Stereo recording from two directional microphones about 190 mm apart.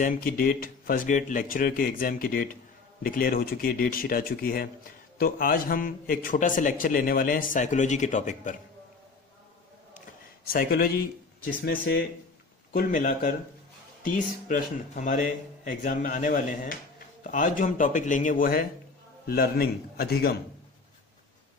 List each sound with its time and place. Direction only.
0.0 s a man's voice: 45° left (ahead or behind)
9.9 s a sound: 50° left (ahead or behind)
11.6 s a man's voice: 50° left (ahead or behind)